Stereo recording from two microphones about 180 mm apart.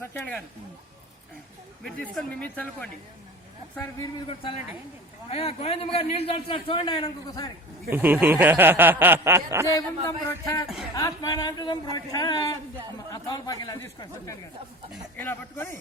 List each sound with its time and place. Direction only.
0.0 s speech: 10° left (ahead or behind)
1.8 s speech: 5° left (ahead or behind)
5.3 s a man's voice: 35° left (ahead or behind)
7.9 s speech: 10° right (ahead or behind)
9.6 s speech: 20° left (ahead or behind)